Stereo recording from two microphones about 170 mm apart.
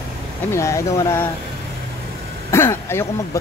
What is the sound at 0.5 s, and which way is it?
Speech, 15° left (ahead or behind).